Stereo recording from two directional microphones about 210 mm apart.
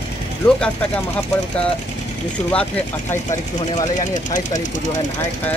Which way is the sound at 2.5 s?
5° left (ahead or behind).